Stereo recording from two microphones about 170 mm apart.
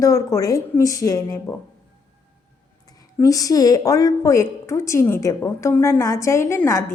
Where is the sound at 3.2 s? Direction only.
20° left (ahead or behind).